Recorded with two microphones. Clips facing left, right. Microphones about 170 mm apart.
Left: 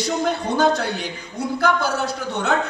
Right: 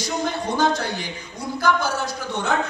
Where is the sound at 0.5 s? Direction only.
60° left (ahead or behind).